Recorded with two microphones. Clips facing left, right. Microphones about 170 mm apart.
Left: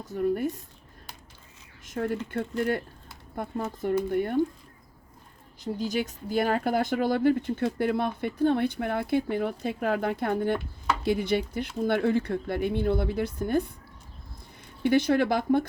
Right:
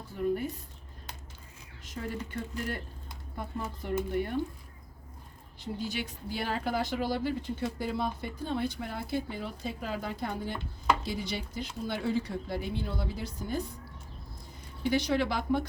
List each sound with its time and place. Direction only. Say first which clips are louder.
0.0 s speech: left 4 dB; 45° left (ahead or behind)
1.8 s speech: left 8 dB; 50° left (ahead or behind)
3.3 s speech: left 6 dB; 45° left (ahead or behind)
5.6 s speech: left 6 dB; 45° left (ahead or behind)
14.8 s speech: left 6 dB; 50° left (ahead or behind)